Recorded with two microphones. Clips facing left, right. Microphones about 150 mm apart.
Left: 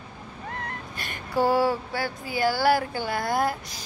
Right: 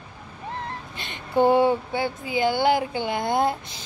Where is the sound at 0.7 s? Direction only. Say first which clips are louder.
Right 1 dB; 25° right (ahead or behind).